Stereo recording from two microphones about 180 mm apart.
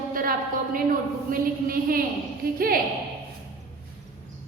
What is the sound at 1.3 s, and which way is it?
Speech, 55° right (ahead or behind).